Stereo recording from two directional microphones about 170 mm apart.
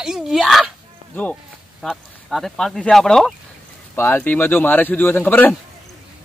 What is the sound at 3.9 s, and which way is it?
A man's voice, 15° left (ahead or behind).